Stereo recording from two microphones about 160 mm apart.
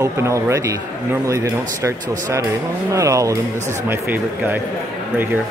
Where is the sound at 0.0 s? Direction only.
20° right (ahead or behind).